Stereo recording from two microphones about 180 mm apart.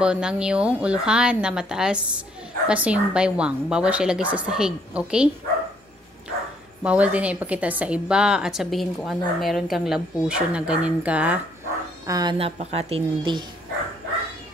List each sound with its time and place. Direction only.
0.0 s a woman's voice: 5° right (ahead or behind)
6.8 s a woman's voice: 5° right (ahead or behind)
12.1 s a woman's voice: 25° right (ahead or behind)